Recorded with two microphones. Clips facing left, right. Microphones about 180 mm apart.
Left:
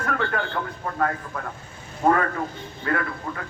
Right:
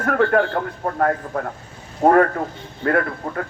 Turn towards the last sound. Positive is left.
turn(degrees=-50)  # may be behind; listen again after turning